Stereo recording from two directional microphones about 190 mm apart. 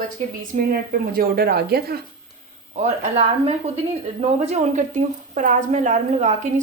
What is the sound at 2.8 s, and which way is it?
A woman's voice, 35° right (ahead or behind).